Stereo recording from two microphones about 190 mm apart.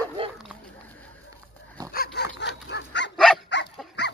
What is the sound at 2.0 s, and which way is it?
Dog, 60° left (ahead or behind).